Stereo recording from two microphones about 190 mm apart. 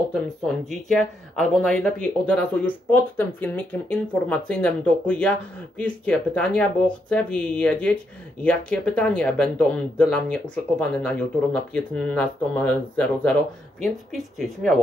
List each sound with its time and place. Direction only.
0.7 s speech: centre (ahead or behind)